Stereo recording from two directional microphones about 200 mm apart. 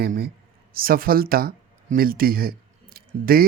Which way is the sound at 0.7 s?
45° right (ahead or behind).